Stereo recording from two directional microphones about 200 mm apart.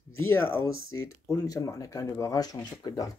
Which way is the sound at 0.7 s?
90° left.